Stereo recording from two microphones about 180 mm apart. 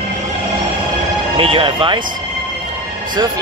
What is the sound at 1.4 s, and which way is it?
Speech, 30° right (ahead or behind).